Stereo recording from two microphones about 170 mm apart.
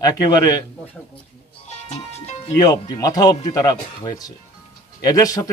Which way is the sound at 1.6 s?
40° left (ahead or behind).